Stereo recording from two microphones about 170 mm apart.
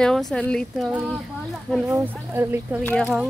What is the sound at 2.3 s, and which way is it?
Speech, 10° right (ahead or behind).